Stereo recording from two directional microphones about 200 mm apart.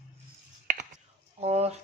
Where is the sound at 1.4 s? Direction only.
30° right (ahead or behind).